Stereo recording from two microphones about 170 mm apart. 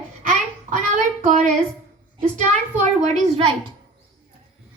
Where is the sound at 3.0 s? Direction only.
40° right (ahead or behind).